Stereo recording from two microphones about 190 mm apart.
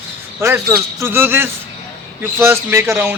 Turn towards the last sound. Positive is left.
turn(degrees=-10)  # may be behind; listen again after turning